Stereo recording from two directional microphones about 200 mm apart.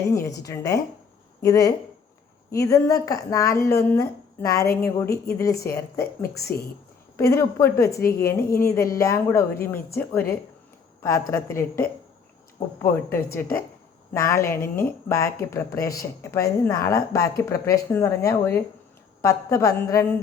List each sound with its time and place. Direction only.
0.1 s speech: 15° left (ahead or behind)